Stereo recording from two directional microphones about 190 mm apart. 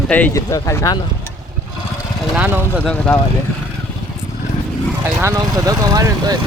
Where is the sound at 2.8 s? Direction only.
5° left (ahead or behind).